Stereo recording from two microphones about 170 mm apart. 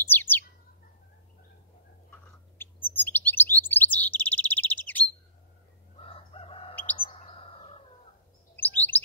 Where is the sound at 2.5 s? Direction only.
10° left (ahead or behind).